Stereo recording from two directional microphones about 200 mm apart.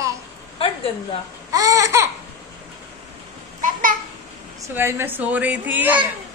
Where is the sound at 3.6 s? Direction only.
40° right (ahead or behind).